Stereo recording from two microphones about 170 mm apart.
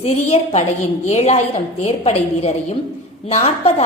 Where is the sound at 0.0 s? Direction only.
40° left (ahead or behind).